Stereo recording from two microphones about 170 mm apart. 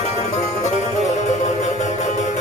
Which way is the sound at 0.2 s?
45° left (ahead or behind).